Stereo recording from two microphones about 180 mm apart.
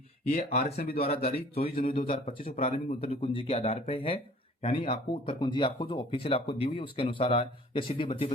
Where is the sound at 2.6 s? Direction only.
35° left (ahead or behind).